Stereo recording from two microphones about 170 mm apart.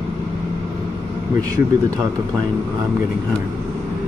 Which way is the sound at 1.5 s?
20° right (ahead or behind).